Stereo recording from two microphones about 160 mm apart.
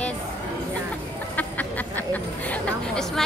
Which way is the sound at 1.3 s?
10° left (ahead or behind).